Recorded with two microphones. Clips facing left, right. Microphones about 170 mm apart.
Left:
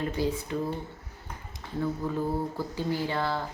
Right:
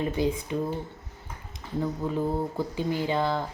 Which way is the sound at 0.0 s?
20° right (ahead or behind).